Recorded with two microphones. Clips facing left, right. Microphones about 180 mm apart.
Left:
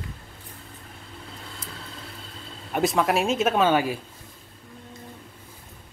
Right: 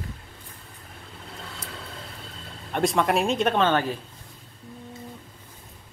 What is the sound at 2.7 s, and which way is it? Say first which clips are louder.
Speech: even; 5° left (ahead or behind).